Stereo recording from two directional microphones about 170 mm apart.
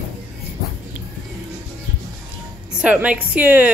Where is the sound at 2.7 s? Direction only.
10° right (ahead or behind).